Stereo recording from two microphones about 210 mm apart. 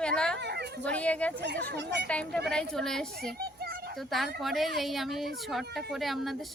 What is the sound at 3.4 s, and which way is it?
Children playing, 45° right (ahead or behind).